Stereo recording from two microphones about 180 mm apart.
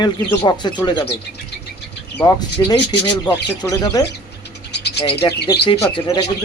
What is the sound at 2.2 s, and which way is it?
Speech, 15° left (ahead or behind).